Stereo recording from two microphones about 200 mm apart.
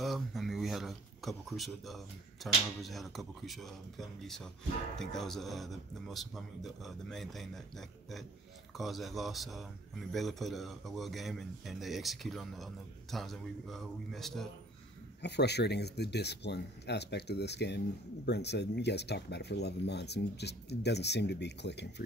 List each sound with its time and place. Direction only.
0.0 s speech: centre (ahead or behind)
4.9 s speech: centre (ahead or behind)
15.2 s speech: 55° left (ahead or behind)